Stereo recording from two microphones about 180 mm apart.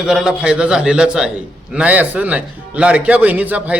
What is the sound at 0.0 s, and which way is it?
A man's voice, 5° right (ahead or behind).